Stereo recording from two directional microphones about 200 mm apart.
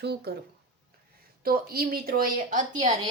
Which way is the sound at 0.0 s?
55° right (ahead or behind).